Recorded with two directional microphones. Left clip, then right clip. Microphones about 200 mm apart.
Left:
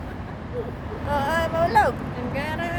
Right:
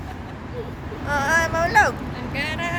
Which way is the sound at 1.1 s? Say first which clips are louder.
Right 3 dB; 5° left (ahead or behind).